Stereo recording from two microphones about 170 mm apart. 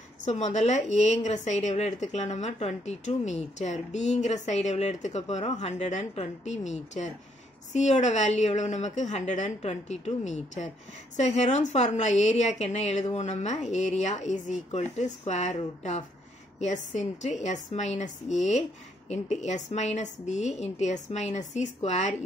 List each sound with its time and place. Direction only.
0.2 s a woman's voice: 40° left (ahead or behind)